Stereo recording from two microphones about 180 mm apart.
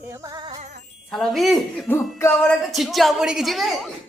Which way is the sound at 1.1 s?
Centre (ahead or behind).